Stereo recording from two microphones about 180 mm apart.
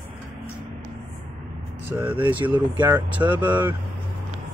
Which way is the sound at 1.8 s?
10° right (ahead or behind).